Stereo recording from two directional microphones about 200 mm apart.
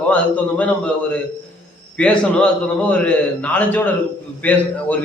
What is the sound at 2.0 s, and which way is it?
A man's voice, 5° left (ahead or behind).